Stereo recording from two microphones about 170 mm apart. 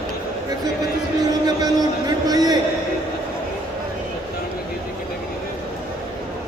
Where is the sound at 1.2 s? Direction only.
20° right (ahead or behind).